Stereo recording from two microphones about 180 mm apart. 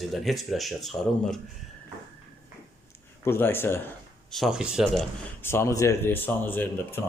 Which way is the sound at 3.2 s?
15° left (ahead or behind).